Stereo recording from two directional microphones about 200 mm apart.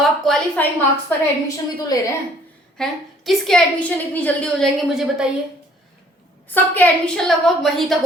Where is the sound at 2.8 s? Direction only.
Centre (ahead or behind).